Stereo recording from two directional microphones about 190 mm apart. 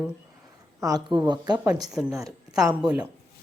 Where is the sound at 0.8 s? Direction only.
20° right (ahead or behind).